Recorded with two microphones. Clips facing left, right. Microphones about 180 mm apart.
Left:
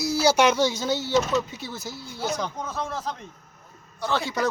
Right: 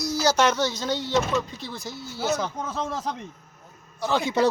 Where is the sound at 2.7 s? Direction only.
15° right (ahead or behind).